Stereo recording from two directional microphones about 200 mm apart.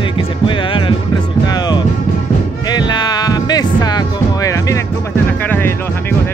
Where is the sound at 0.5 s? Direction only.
25° left (ahead or behind).